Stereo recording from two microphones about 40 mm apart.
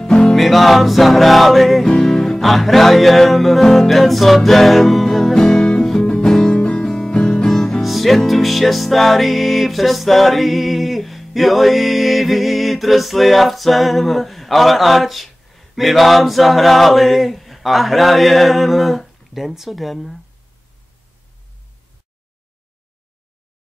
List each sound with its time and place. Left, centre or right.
0.0 s music: centre
0.4 s music: centre
5.3 s music: centre
7.8 s music: centre